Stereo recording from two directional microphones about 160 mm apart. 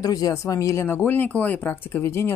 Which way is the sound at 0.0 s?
25° left (ahead or behind).